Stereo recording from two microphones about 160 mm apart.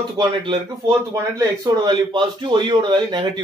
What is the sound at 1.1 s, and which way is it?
A man's voice, 25° right (ahead or behind).